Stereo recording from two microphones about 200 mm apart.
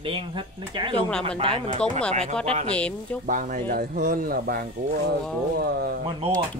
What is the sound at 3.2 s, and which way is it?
Speech, 40° right (ahead or behind).